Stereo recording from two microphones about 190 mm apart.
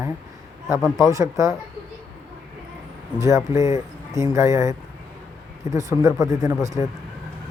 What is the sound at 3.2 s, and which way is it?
Speech, 15° right (ahead or behind).